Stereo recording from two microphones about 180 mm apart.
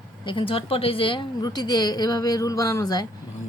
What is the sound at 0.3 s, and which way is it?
A woman's voice, 30° left (ahead or behind).